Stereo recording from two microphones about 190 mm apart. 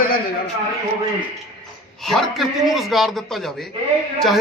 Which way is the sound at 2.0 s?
Centre (ahead or behind).